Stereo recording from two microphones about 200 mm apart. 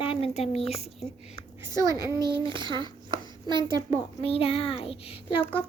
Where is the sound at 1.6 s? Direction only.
15° right (ahead or behind).